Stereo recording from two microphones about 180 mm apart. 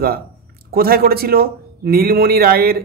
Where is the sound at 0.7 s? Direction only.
55° right (ahead or behind).